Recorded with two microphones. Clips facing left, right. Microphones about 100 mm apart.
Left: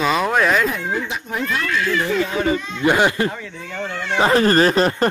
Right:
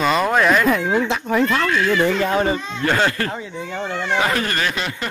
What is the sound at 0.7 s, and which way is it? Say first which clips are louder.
Speech: right 6 dB; 85° right.